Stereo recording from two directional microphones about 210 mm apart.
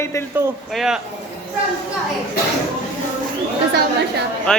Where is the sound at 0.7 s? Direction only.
Centre (ahead or behind).